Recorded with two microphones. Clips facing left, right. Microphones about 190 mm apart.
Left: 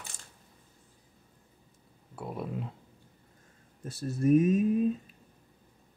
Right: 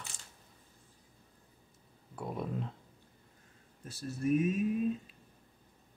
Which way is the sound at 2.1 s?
5° left (ahead or behind).